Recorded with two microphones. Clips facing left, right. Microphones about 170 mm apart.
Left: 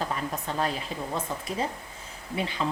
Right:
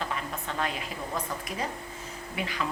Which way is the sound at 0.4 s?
35° left (ahead or behind).